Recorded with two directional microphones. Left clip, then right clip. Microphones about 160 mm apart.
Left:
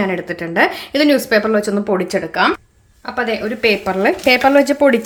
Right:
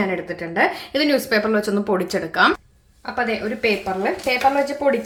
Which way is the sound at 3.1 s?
25° left (ahead or behind).